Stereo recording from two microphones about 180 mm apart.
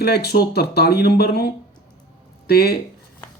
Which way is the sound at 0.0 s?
65° left (ahead or behind).